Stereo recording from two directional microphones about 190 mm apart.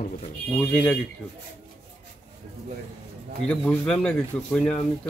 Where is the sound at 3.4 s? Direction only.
5° left (ahead or behind).